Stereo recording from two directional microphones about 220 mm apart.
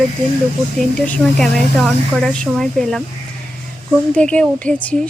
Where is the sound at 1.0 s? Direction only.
Centre (ahead or behind).